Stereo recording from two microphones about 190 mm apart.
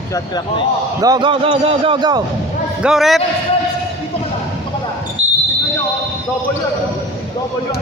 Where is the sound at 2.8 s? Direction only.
Centre (ahead or behind).